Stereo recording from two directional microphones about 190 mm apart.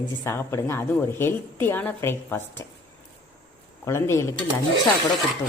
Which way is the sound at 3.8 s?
15° left (ahead or behind).